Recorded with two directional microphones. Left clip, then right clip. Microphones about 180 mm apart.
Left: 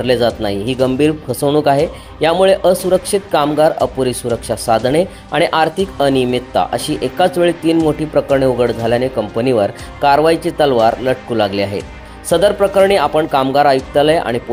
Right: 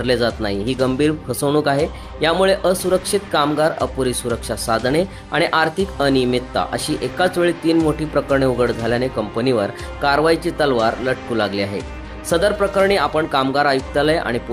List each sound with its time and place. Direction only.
0.0 s speech: 5° left (ahead or behind)